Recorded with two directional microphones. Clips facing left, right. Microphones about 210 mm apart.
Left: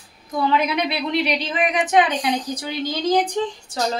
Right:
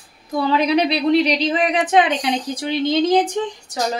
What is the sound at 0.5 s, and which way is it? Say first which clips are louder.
A woman's voice: right 7 dB; 35° right (ahead or behind).